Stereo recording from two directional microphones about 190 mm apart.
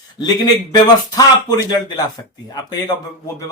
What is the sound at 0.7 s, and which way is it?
Speech, 20° left (ahead or behind).